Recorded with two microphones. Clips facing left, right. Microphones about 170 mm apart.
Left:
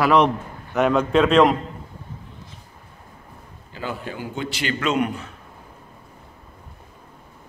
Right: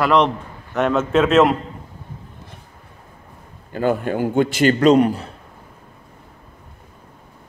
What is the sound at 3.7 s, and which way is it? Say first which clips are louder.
A man's voice: right 11 dB; 50° right (ahead or behind).